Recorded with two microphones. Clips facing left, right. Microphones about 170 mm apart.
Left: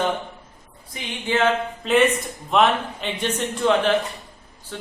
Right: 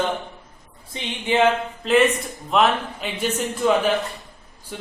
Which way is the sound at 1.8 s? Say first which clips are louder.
Right 1 dB; centre (ahead or behind).